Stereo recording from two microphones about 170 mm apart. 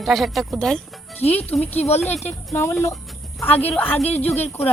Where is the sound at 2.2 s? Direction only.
15° left (ahead or behind).